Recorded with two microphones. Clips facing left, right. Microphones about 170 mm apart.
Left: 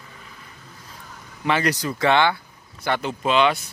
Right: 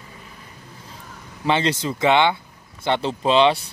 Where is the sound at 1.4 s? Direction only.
25° right (ahead or behind).